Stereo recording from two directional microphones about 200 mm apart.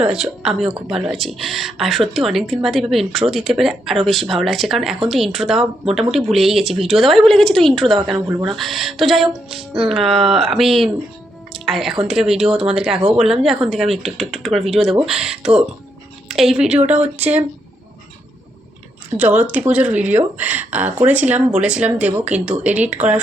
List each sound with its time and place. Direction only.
0.0 s speech: 5° right (ahead or behind)
19.1 s speech: 10° right (ahead or behind)